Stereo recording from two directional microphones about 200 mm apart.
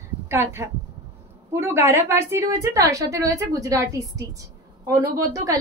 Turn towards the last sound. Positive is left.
turn(degrees=-15)  # may be behind; listen again after turning